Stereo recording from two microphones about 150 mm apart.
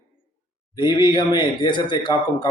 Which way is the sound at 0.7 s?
30° left (ahead or behind).